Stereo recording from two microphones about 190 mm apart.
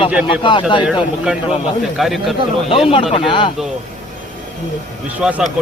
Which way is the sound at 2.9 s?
30° left (ahead or behind).